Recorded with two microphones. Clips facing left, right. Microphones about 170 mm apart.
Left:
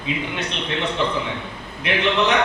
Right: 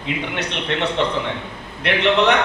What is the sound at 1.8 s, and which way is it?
Speech, 65° right (ahead or behind).